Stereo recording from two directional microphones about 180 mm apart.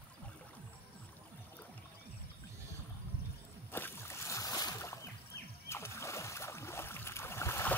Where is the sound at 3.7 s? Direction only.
15° left (ahead or behind).